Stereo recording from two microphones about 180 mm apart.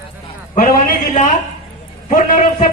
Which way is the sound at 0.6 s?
45° left (ahead or behind).